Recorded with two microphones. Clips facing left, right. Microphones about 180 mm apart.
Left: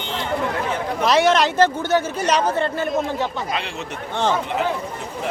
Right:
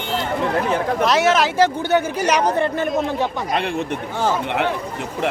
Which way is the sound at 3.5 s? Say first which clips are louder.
Right 5 dB; 55° right (ahead or behind).